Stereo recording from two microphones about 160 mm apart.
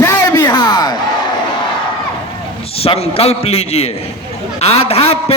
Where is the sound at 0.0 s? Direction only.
25° left (ahead or behind).